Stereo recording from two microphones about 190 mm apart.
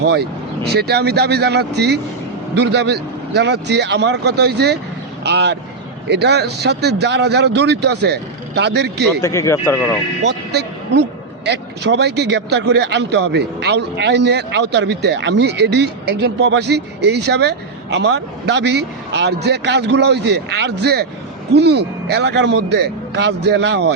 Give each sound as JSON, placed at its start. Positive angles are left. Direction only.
{"t": 0.0, "sound": "a man's voice", "side_deg": -60}
{"t": 9.2, "sound": "speech", "side_deg": 15}
{"t": 10.2, "sound": "a man's voice", "side_deg": -60}